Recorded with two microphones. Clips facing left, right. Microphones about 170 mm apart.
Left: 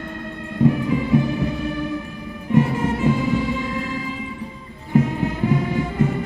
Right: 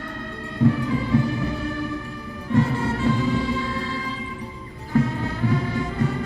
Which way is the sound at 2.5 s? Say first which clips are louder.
Left 3 dB; 15° left (ahead or behind).